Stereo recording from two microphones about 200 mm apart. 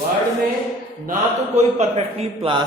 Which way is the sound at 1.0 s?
35° right (ahead or behind).